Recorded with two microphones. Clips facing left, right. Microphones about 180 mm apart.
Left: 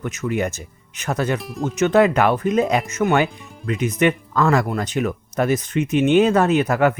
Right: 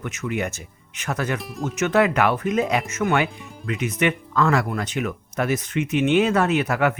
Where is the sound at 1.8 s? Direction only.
35° left (ahead or behind).